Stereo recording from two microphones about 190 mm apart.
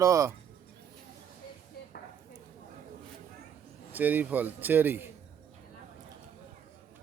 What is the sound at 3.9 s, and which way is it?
Speech, 10° right (ahead or behind).